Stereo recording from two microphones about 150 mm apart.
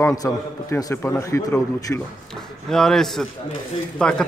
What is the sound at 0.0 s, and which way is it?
A man's voice, 20° left (ahead or behind).